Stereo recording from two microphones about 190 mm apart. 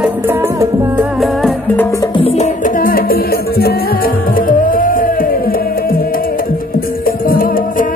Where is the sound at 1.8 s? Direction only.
15° left (ahead or behind).